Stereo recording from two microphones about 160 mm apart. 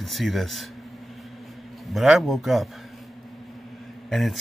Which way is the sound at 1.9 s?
Centre (ahead or behind).